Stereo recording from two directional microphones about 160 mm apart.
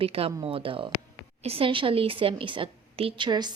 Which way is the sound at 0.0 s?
35° right (ahead or behind).